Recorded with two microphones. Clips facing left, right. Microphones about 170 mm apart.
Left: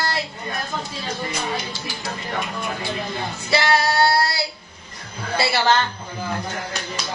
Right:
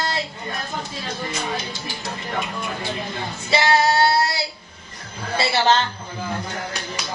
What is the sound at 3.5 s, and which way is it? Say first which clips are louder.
Female singing: right 1 dB; 25° right (ahead or behind).